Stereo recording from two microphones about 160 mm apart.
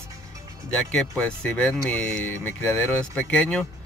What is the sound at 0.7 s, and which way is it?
Speech, 10° left (ahead or behind).